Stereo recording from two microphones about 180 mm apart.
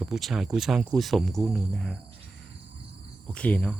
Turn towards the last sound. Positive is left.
turn(degrees=10)  # may be behind; listen again after turning